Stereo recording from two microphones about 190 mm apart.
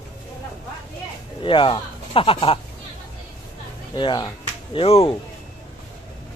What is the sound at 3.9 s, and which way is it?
Speech, 25° left (ahead or behind).